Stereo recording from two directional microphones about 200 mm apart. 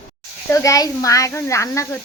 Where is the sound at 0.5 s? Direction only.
15° left (ahead or behind).